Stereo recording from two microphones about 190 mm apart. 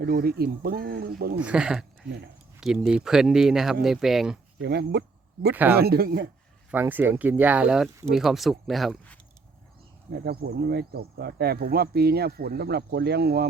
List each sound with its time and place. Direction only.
0.0 s speech: 55° right (ahead or behind)
1.4 s speech: 5° right (ahead or behind)
2.0 s speech: 65° right (ahead or behind)
2.6 s speech: centre (ahead or behind)
4.6 s speech: 60° right (ahead or behind)
6.7 s speech: 10° right (ahead or behind)
10.1 s speech: 55° right (ahead or behind)